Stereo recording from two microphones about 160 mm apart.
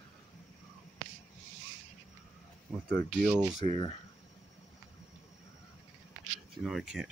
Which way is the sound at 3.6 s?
35° left (ahead or behind).